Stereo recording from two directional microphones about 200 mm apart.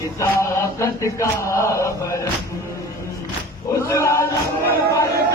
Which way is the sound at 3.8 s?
15° left (ahead or behind).